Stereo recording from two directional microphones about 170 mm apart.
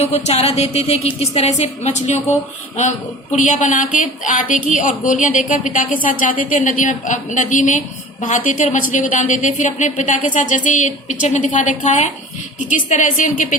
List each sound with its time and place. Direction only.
0.0 s a woman's voice: 40° left (ahead or behind)
3.3 s speech: 45° left (ahead or behind)